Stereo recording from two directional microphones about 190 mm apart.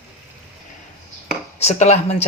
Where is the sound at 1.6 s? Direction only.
35° left (ahead or behind).